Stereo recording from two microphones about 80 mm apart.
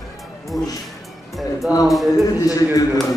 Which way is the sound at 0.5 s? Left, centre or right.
Left.